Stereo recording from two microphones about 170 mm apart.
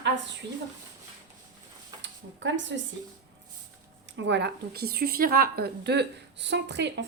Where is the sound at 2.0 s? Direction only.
90° right.